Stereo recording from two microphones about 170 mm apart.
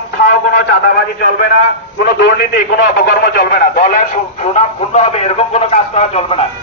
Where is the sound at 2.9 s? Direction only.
65° left (ahead or behind).